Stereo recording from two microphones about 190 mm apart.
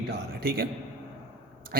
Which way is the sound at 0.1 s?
55° right (ahead or behind).